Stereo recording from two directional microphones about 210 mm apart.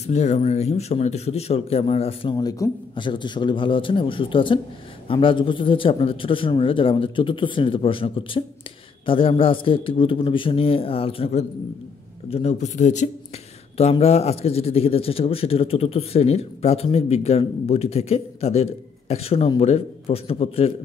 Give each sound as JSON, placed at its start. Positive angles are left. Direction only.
{"t": 0.0, "sound": "speech", "side_deg": 30}